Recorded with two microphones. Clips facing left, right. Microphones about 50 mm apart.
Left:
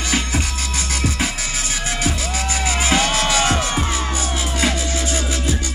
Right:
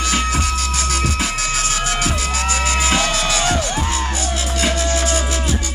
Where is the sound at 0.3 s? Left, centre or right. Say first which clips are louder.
Right 4 dB; right.